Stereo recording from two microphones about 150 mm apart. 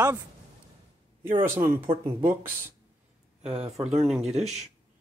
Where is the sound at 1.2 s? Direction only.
15° right (ahead or behind).